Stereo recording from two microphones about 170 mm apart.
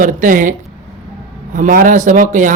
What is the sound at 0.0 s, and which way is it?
Speech, 50° right (ahead or behind).